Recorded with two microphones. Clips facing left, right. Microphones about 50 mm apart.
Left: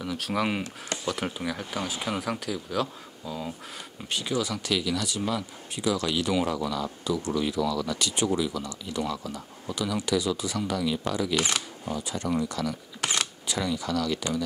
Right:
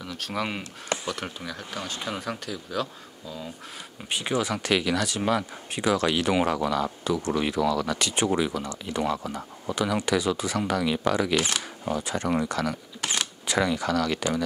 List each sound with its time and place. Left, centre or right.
0.0 s speech: centre
4.1 s speech: right